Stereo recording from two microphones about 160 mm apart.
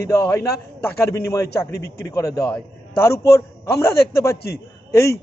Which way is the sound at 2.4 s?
5° left (ahead or behind).